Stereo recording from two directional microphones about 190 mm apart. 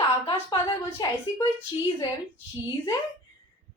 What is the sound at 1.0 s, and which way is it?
Speech, 20° left (ahead or behind).